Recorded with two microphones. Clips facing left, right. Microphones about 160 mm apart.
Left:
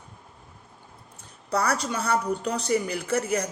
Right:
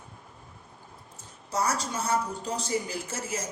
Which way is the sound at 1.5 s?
65° left (ahead or behind).